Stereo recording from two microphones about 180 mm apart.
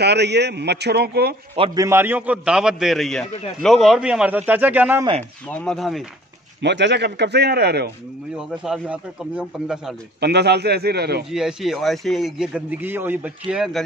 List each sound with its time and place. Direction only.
0.0 s a man's voice: 70° right (ahead or behind)
1.8 s a man's voice: 15° right (ahead or behind)
5.5 s a man's voice: 5° left (ahead or behind)
6.6 s a man's voice: 75° right (ahead or behind)
8.4 s a man's voice: 5° right (ahead or behind)
10.2 s speech: 65° right (ahead or behind)
11.2 s a man's voice: 5° right (ahead or behind)